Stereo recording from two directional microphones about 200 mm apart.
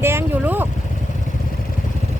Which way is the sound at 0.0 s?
10° right (ahead or behind).